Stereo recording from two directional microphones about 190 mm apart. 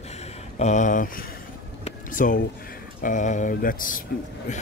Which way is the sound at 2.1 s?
45° left (ahead or behind).